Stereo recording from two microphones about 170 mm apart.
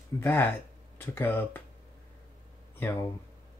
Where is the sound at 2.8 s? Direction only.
15° left (ahead or behind).